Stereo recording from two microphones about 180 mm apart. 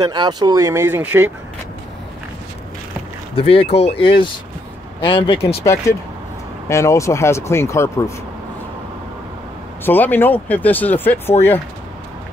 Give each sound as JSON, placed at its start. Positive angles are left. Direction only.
{"t": 0.0, "sound": "speech", "side_deg": -25}
{"t": 3.3, "sound": "speech", "side_deg": 30}
{"t": 5.6, "sound": "speech", "side_deg": 15}
{"t": 9.8, "sound": "speech", "side_deg": 10}